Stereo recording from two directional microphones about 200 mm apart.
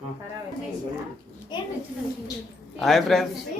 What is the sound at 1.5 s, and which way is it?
Speech, 25° left (ahead or behind).